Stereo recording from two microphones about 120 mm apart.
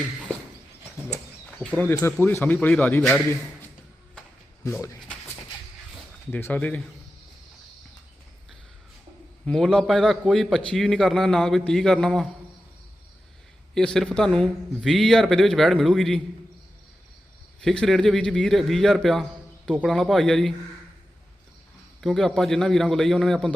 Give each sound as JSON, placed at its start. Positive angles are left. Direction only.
{"t": 1.5, "sound": "a sound", "side_deg": 5}
{"t": 1.8, "sound": "speech", "side_deg": 20}
{"t": 6.3, "sound": "speech", "side_deg": 15}
{"t": 9.5, "sound": "speech", "side_deg": 5}
{"t": 13.7, "sound": "speech", "side_deg": 5}
{"t": 17.6, "sound": "speech", "side_deg": 5}
{"t": 22.0, "sound": "speech", "side_deg": 5}